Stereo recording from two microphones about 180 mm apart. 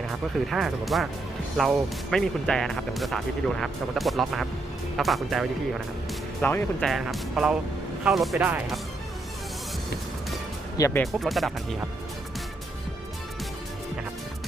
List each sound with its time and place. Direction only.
0.1 s speech: centre (ahead or behind)
6.4 s speech: 10° left (ahead or behind)
6.9 s speech: centre (ahead or behind)
10.8 s speech: 15° left (ahead or behind)
11.0 s speech: centre (ahead or behind)